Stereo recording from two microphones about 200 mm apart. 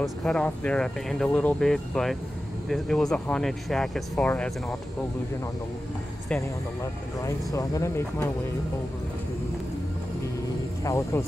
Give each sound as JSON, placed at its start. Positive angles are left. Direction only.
{"t": 0.0, "sound": "speech", "side_deg": 5}
{"t": 6.8, "sound": "speech", "side_deg": 15}
{"t": 10.8, "sound": "speech", "side_deg": 15}